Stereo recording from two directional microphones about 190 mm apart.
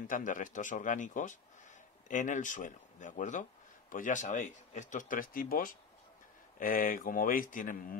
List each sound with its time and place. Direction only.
0.1 s speech: 45° left (ahead or behind)